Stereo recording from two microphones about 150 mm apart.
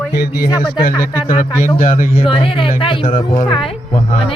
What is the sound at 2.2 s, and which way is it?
A woman's voice, 35° left (ahead or behind).